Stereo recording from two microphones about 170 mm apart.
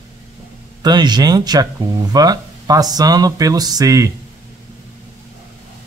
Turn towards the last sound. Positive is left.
turn(degrees=-20)  # may be behind; listen again after turning